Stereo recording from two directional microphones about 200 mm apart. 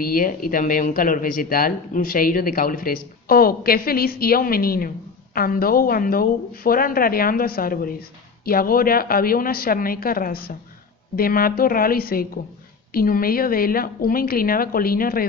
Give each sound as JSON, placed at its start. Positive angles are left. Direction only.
{"t": 0.0, "sound": "speech", "side_deg": 45}